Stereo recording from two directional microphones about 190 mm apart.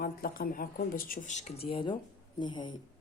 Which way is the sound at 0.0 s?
50° left (ahead or behind).